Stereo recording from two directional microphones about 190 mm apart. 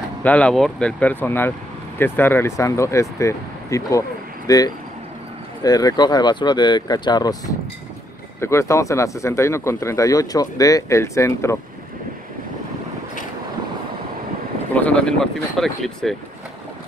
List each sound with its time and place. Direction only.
0.2 s speech: 5° left (ahead or behind)
14.7 s speech: 5° left (ahead or behind)